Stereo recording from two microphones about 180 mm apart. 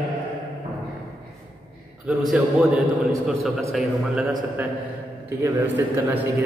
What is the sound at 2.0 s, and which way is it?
A man's voice, 5° right (ahead or behind).